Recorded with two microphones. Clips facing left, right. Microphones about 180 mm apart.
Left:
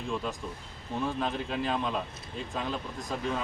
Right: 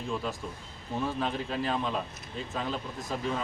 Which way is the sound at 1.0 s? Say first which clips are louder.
Even; centre (ahead or behind).